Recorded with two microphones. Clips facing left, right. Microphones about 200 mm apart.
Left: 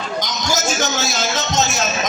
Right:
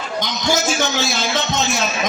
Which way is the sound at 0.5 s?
40° left (ahead or behind).